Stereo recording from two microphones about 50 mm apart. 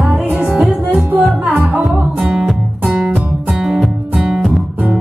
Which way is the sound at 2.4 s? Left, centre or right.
Right.